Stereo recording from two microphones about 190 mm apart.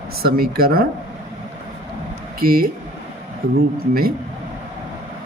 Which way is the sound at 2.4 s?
50° right (ahead or behind).